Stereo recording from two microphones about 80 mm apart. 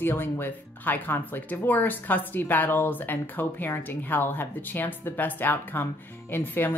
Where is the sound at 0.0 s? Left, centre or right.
Left.